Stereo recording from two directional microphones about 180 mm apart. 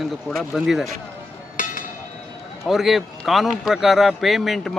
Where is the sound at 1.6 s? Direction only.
50° left (ahead or behind).